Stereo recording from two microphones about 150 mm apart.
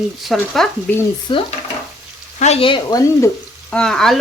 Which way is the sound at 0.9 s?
10° left (ahead or behind).